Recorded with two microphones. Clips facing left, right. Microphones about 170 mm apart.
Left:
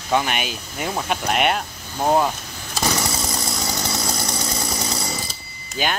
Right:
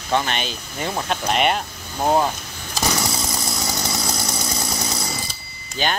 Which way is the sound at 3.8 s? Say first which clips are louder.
Even; 5° right (ahead or behind).